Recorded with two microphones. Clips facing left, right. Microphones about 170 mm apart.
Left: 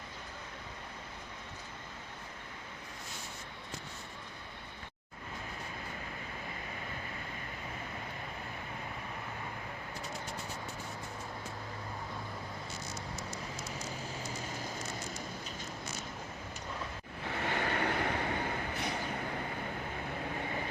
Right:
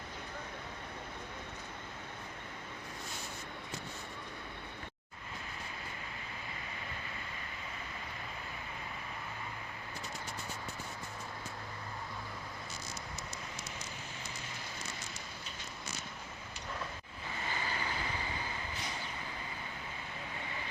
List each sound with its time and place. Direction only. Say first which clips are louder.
17.2 s vehicle: left 6 dB; 70° left (ahead or behind)